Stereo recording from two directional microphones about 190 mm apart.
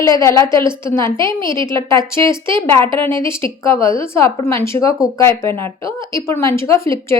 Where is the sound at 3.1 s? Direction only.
25° right (ahead or behind).